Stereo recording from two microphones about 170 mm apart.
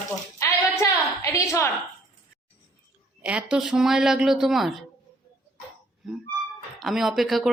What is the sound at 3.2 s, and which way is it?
Speech, 5° right (ahead or behind).